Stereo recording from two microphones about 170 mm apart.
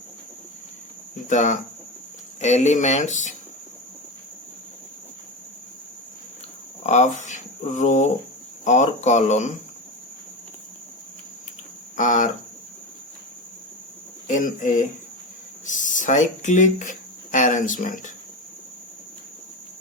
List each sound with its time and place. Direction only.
1.3 s speech: 50° left (ahead or behind)
6.8 s speech: 45° left (ahead or behind)
11.9 s speech: 50° left (ahead or behind)
14.3 s speech: 50° left (ahead or behind)